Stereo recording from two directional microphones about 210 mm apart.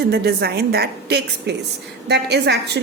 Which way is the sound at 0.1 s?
50° right (ahead or behind).